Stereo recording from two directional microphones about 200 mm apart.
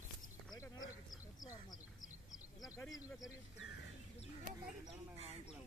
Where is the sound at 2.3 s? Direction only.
20° left (ahead or behind).